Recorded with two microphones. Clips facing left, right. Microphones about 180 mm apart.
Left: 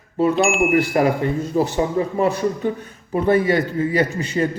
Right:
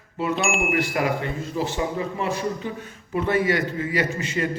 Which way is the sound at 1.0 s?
40° left (ahead or behind).